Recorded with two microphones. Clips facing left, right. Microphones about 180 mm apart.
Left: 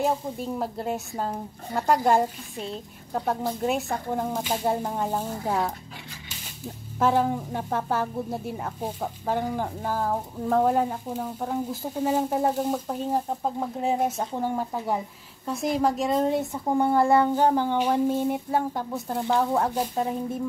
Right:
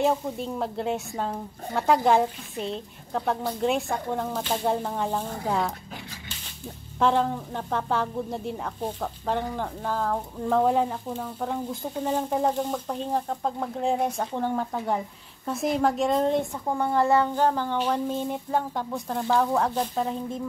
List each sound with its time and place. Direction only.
0.0 s speech: 5° left (ahead or behind)
7.0 s speech: 5° left (ahead or behind)
19.1 s speech: 15° left (ahead or behind)